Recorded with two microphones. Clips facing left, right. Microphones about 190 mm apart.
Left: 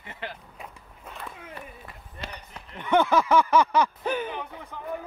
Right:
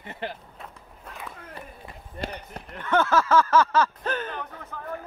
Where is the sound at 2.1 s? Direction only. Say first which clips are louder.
Right 7 dB; 50° right (ahead or behind).